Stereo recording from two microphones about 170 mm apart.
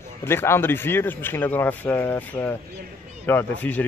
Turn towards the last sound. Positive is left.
turn(degrees=10)  # may be behind; listen again after turning